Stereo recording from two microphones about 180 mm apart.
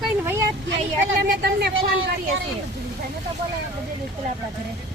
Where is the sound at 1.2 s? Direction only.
65° right (ahead or behind).